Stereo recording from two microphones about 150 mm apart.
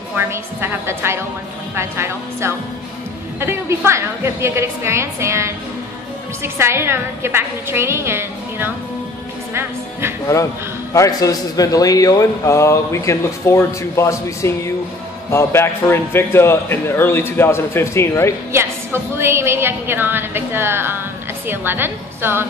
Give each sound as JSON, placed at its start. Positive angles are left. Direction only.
{"t": 0.1, "sound": "a woman's voice", "side_deg": -15}
{"t": 10.9, "sound": "a man's voice", "side_deg": 20}
{"t": 18.5, "sound": "a woman's voice", "side_deg": -15}